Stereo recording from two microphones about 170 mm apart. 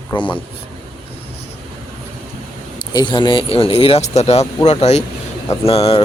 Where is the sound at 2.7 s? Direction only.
25° left (ahead or behind).